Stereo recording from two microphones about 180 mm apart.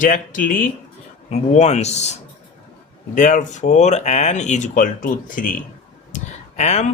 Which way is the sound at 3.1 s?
45° left (ahead or behind).